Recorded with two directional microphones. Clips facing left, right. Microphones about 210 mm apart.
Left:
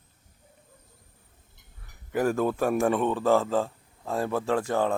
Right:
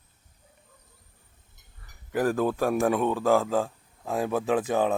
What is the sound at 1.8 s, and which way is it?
A man's voice, centre (ahead or behind).